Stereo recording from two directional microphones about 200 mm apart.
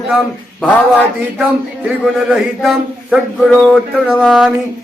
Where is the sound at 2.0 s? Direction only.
5° right (ahead or behind).